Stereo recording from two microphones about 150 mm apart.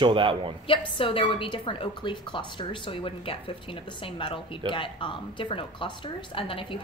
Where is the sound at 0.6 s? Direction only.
35° left (ahead or behind).